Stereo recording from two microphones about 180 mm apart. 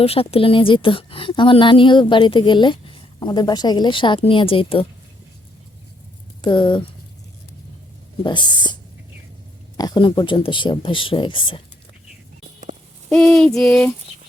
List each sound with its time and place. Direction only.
0.0 s a woman's voice: 35° left (ahead or behind)
6.4 s a woman's voice: 25° left (ahead or behind)
8.2 s a woman's voice: 25° left (ahead or behind)
13.1 s a sound: 5° left (ahead or behind)